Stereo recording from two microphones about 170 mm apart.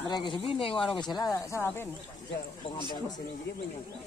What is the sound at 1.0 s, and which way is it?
Speech, 25° left (ahead or behind).